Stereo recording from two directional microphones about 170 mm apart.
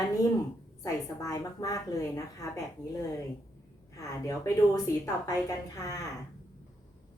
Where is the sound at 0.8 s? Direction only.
20° left (ahead or behind).